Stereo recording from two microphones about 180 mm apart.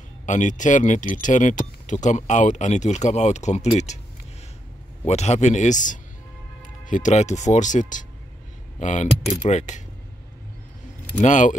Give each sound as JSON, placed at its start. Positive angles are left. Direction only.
{"t": 0.3, "sound": "speech", "side_deg": 45}
{"t": 5.0, "sound": "speech", "side_deg": 40}
{"t": 11.1, "sound": "speech", "side_deg": 45}